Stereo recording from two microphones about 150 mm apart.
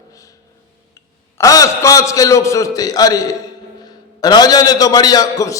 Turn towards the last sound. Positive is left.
turn(degrees=20)  # may be behind; listen again after turning